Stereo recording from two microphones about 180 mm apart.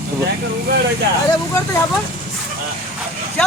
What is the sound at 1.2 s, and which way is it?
Speech, 20° left (ahead or behind).